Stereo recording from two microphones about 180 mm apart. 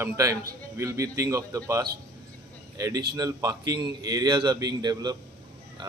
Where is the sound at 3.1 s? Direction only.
20° right (ahead or behind).